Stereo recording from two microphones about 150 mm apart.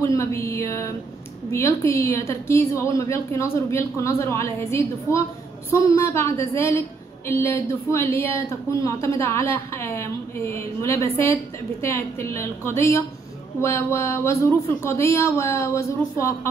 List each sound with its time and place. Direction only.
0.0 s a woman's voice: 20° left (ahead or behind)